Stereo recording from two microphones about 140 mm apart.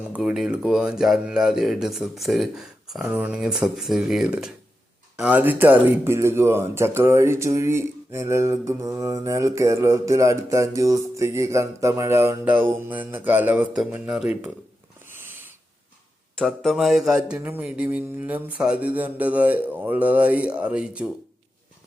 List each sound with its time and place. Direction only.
0.1 s speech: 5° right (ahead or behind)
3.0 s speech: 10° right (ahead or behind)
15.0 s a sound: 15° right (ahead or behind)
16.3 s speech: 5° left (ahead or behind)